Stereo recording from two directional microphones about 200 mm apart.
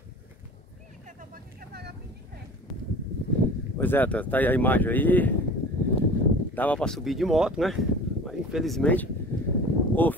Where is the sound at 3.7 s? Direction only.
10° left (ahead or behind).